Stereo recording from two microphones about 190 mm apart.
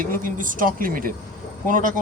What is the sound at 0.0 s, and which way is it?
A man's voice, 45° right (ahead or behind).